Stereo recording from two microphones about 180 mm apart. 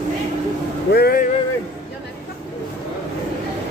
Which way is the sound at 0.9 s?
60° left (ahead or behind).